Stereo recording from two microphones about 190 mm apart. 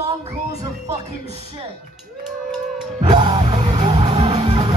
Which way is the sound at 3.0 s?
20° right (ahead or behind).